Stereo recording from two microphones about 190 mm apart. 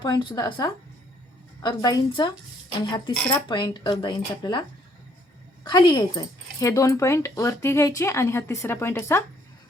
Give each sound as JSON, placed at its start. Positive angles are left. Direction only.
{"t": 0.0, "sound": "speech", "side_deg": 25}
{"t": 5.6, "sound": "speech", "side_deg": 25}